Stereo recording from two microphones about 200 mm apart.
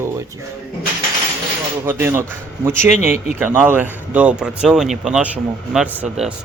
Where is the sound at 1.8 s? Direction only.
10° right (ahead or behind).